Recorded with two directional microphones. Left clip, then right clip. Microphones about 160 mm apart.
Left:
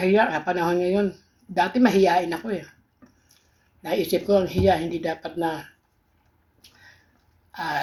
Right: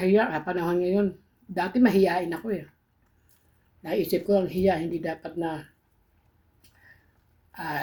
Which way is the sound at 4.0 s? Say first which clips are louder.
Left 3 dB; 15° right (ahead or behind).